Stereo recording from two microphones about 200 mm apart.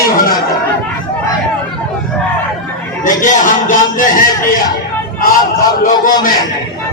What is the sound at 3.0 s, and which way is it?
Speech, 40° left (ahead or behind).